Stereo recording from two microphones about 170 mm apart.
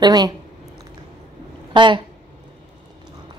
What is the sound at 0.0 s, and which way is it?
Speech, 25° right (ahead or behind).